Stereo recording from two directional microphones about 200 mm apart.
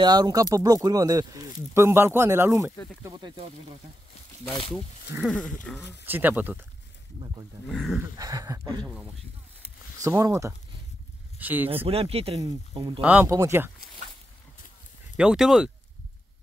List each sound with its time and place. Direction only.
0.0 s speech: 20° right (ahead or behind)
5.3 s speech: 5° left (ahead or behind)
6.0 s speech: 10° right (ahead or behind)
7.6 s speech: centre (ahead or behind)
8.2 s speech: 15° right (ahead or behind)
10.0 s speech: 15° right (ahead or behind)
11.8 s speech: 30° right (ahead or behind)
13.0 s speech: 10° right (ahead or behind)
15.1 s speech: 5° right (ahead or behind)